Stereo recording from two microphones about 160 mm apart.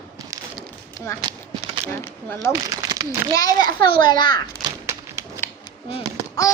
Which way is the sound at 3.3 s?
25° left (ahead or behind).